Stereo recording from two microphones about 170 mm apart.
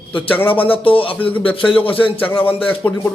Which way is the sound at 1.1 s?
10° left (ahead or behind).